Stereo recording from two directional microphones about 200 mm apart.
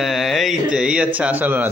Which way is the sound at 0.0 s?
Centre (ahead or behind).